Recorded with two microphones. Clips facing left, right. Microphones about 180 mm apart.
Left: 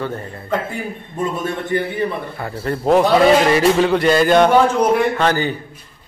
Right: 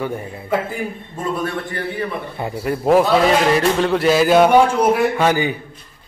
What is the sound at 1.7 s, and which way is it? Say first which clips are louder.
Speech: left 7 dB; 20° left (ahead or behind).